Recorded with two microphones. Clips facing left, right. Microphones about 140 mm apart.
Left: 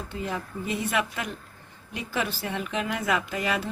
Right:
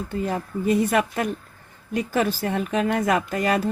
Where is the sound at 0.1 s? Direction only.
50° right (ahead or behind).